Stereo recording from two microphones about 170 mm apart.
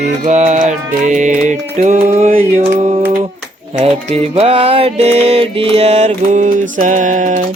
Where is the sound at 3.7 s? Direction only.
40° right (ahead or behind).